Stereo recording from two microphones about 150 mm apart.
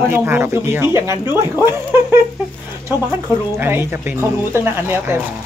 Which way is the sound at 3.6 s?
15° right (ahead or behind).